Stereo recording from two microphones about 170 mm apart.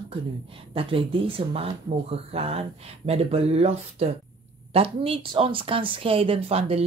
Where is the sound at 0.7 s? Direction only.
30° right (ahead or behind).